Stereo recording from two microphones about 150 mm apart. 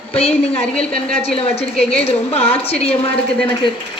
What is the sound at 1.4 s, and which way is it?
A woman's voice, 40° left (ahead or behind).